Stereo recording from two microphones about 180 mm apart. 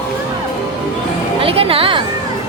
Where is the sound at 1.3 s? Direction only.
30° right (ahead or behind).